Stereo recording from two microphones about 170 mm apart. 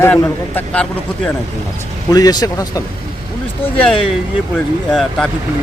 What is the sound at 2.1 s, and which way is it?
Speech, 20° left (ahead or behind).